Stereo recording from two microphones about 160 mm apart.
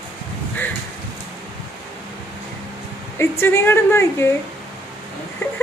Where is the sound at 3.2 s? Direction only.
15° left (ahead or behind).